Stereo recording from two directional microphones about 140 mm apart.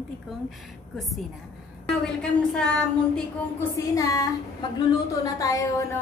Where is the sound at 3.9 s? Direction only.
25° left (ahead or behind).